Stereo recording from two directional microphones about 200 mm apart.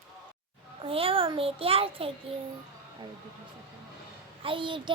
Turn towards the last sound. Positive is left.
turn(degrees=-25)  # may be behind; listen again after turning